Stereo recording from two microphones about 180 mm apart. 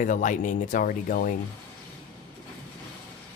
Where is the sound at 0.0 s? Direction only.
45° left (ahead or behind).